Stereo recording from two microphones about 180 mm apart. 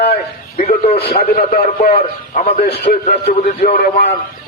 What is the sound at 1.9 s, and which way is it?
A man's voice, 40° left (ahead or behind).